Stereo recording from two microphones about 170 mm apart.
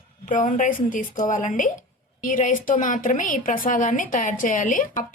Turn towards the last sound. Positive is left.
turn(degrees=50)  # may be behind; listen again after turning